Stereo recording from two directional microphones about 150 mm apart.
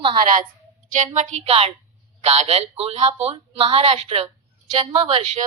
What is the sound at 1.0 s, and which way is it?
A man's voice, 50° right (ahead or behind).